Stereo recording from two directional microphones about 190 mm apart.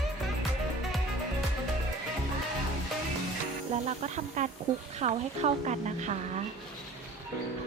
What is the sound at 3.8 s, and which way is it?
Speech, 35° right (ahead or behind).